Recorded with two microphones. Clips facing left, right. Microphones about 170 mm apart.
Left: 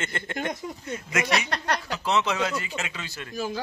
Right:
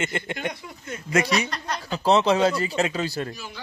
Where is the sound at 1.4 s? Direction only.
70° left (ahead or behind).